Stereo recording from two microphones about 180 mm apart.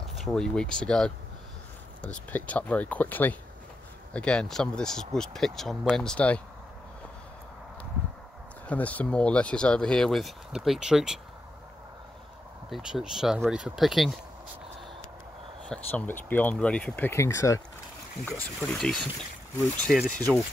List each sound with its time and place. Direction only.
0.0 s speech: centre (ahead or behind)
8.6 s speech: 10° left (ahead or behind)
12.6 s speech: centre (ahead or behind)
15.7 s speech: 10° left (ahead or behind)
18.2 s speech: 5° left (ahead or behind)